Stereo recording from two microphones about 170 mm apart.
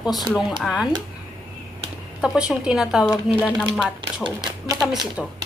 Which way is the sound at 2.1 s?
5° right (ahead or behind).